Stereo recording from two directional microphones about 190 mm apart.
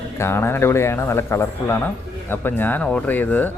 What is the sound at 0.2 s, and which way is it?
Speech, 10° left (ahead or behind).